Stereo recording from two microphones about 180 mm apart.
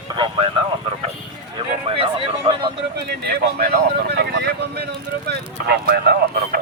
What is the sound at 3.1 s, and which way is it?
Speech, 65° right (ahead or behind).